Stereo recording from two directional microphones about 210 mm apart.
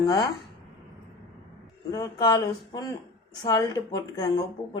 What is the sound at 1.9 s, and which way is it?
A woman's voice, 15° left (ahead or behind).